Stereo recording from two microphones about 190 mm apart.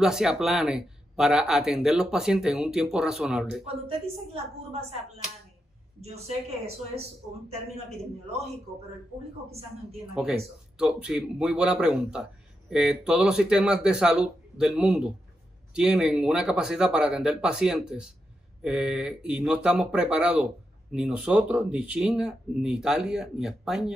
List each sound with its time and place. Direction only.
0.0 s a man's voice: 5° right (ahead or behind)
3.6 s a man's voice: 30° right (ahead or behind)
10.2 s a man's voice: 5° right (ahead or behind)